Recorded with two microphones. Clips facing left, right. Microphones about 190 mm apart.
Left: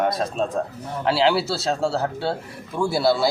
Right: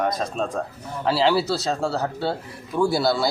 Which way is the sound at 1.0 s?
Centre (ahead or behind).